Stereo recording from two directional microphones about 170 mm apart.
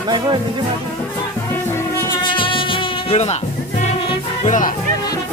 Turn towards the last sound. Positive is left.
turn(degrees=50)  # may be behind; listen again after turning